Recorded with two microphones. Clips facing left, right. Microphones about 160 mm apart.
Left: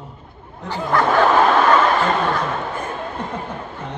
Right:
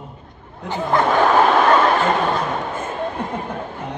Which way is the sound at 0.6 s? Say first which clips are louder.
Right 1 dB; 20° right (ahead or behind).